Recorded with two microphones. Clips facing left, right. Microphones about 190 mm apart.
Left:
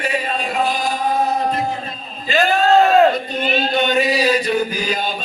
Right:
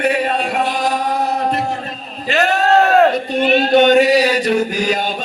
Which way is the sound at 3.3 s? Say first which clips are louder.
Right 7 dB; 70° right (ahead or behind).